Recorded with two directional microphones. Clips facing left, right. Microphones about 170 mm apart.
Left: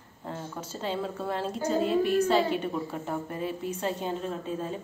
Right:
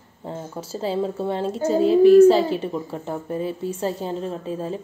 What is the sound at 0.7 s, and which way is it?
Child singing, 30° right (ahead or behind).